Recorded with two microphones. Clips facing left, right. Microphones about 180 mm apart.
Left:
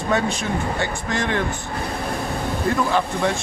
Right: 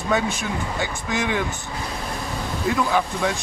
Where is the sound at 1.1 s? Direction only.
5° right (ahead or behind).